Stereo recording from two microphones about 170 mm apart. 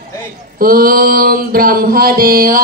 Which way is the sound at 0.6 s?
60° right (ahead or behind).